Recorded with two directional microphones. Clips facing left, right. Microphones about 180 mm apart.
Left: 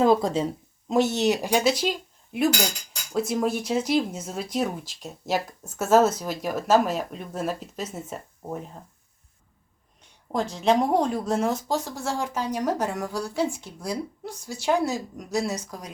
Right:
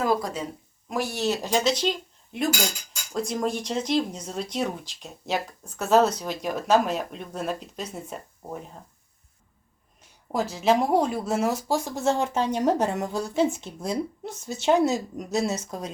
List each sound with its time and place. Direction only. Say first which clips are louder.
0.0 s speech: left 5 dB; 25° left (ahead or behind); by 8.8 s centre (ahead or behind)
10.0 s speech: even; 5° right (ahead or behind); by 15.9 s 25° right (ahead or behind)